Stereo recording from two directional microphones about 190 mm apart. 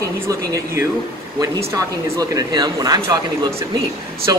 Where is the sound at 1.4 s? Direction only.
20° right (ahead or behind).